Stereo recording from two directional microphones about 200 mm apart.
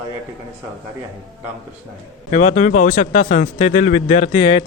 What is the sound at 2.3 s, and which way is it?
Speech, 35° left (ahead or behind).